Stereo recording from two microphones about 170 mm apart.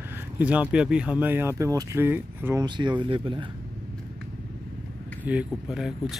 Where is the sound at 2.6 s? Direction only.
25° right (ahead or behind).